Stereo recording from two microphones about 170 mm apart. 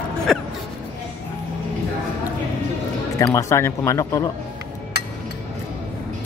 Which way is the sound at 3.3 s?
15° left (ahead or behind).